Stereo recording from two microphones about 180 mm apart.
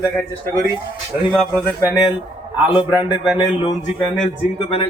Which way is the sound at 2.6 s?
10° right (ahead or behind).